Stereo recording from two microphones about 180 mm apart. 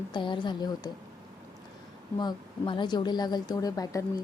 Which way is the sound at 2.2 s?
25° left (ahead or behind).